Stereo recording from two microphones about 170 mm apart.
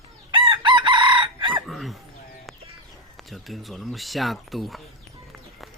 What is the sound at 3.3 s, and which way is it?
Speech, centre (ahead or behind).